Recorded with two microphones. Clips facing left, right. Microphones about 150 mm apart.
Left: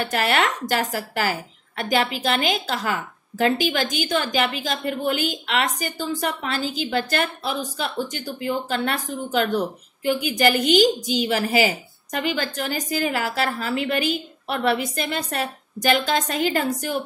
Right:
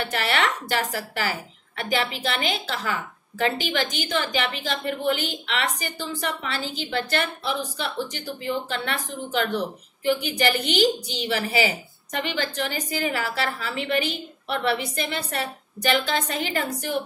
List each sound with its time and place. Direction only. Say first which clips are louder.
0.1 s a woman's voice: left 4 dB; 45° left (ahead or behind)